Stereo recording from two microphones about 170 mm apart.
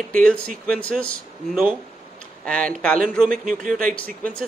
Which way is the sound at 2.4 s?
5° left (ahead or behind).